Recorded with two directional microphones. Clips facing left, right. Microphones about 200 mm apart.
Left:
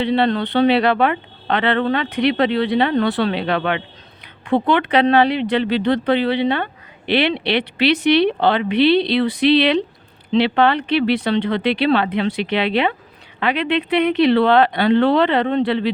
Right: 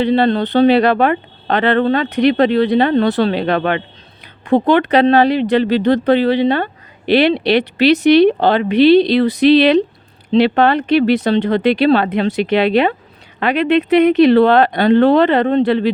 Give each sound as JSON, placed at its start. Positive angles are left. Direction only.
{"t": 0.0, "sound": "speech", "side_deg": -40}